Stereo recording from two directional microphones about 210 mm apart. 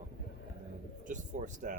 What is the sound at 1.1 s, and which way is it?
Speech, 35° right (ahead or behind).